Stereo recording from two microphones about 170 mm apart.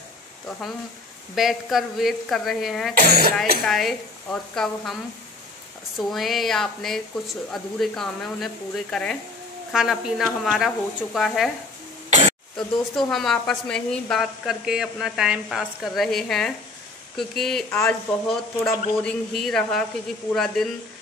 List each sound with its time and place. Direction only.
1.3 s speech: centre (ahead or behind)
2.9 s speech: 60° right (ahead or behind)
3.6 s speech: centre (ahead or behind)
5.9 s speech: centre (ahead or behind)
12.1 s throat clearing: 45° right (ahead or behind)
12.5 s speech: centre (ahead or behind)